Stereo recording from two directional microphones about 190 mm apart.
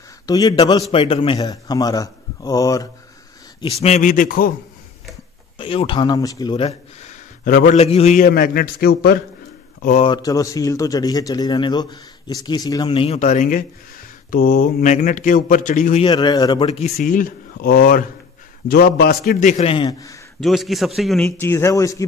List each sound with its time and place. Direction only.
0.3 s a man's voice: 20° left (ahead or behind)
3.6 s a man's voice: 35° left (ahead or behind); by 4.6 s 50° left (ahead or behind)
5.6 s speech: 30° left (ahead or behind); by 9.2 s 55° left (ahead or behind)
9.8 s speech: 40° left (ahead or behind)
10.0 s a man's voice: 20° left (ahead or behind); by 16.0 s 40° left (ahead or behind)
16.0 s a man's voice: 25° left (ahead or behind)
16.6 s speech: 35° left (ahead or behind)
17.0 s a man's voice: 50° left (ahead or behind)
19.5 s a man's voice: 30° left (ahead or behind)
20.3 s a man's voice: centre (ahead or behind)
21.4 s speech: 15° left (ahead or behind)